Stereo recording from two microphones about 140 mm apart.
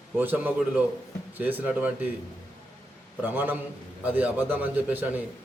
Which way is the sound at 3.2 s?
15° right (ahead or behind).